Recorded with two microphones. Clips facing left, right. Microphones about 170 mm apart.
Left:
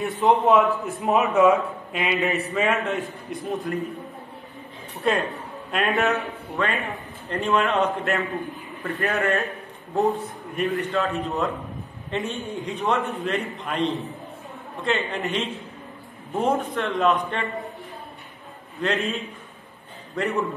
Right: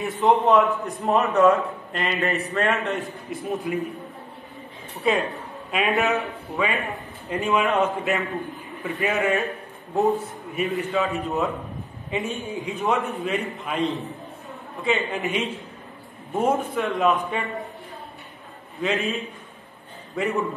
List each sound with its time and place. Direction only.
0.0 s a man's voice: centre (ahead or behind)
5.0 s a man's voice: centre (ahead or behind)
10.5 s a man's voice: 5° right (ahead or behind)
18.8 s a man's voice: centre (ahead or behind)